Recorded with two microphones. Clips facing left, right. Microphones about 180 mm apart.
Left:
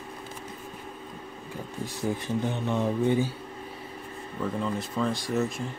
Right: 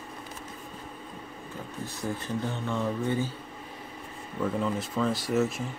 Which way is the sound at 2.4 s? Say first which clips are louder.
Left 3 dB; 20° left (ahead or behind).